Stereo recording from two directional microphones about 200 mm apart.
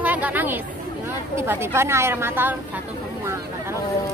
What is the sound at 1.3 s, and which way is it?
A woman's voice, 10° right (ahead or behind).